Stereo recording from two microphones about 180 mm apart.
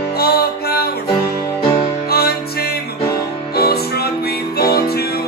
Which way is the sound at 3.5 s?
60° left (ahead or behind).